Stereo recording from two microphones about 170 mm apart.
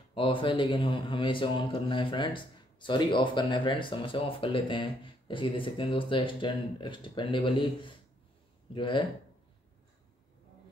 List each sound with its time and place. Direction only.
0.1 s a man's voice: 30° left (ahead or behind)